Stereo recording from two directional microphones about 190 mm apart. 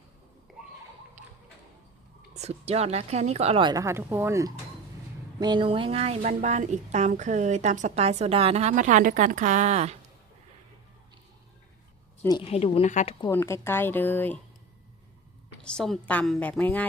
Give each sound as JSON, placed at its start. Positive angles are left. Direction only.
{"t": 0.5, "sound": "a sound", "side_deg": 0}
{"t": 2.3, "sound": "a woman's voice", "side_deg": -35}
{"t": 12.4, "sound": "a woman's voice", "side_deg": 30}
{"t": 13.3, "sound": "a woman's voice", "side_deg": 15}
{"t": 15.6, "sound": "a woman's voice", "side_deg": 5}